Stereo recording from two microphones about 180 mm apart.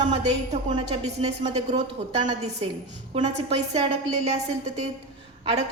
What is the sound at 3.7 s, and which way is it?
Speech, 35° right (ahead or behind).